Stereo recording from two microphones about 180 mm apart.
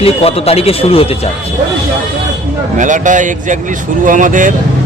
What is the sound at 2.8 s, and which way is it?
Speech, 45° right (ahead or behind).